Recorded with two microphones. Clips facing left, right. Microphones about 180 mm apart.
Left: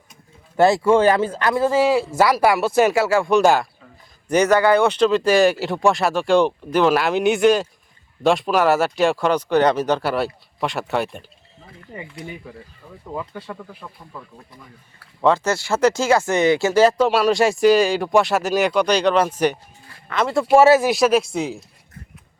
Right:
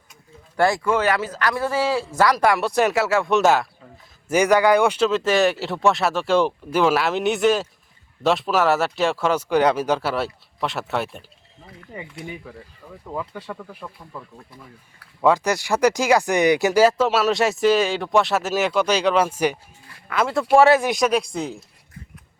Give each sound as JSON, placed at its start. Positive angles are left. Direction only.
{"t": 0.1, "sound": "speech", "side_deg": 20}
{"t": 13.1, "sound": "speech", "side_deg": 5}
{"t": 15.2, "sound": "speech", "side_deg": -10}